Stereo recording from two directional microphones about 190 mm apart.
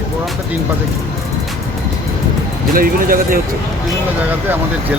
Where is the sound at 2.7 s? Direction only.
50° right (ahead or behind).